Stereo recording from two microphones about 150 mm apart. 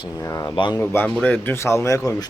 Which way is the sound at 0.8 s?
10° left (ahead or behind).